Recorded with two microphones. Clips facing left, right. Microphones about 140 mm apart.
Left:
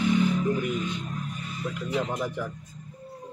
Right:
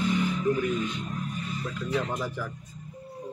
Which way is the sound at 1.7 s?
15° left (ahead or behind).